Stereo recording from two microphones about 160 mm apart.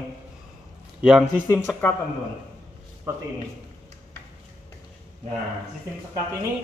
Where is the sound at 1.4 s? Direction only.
15° left (ahead or behind).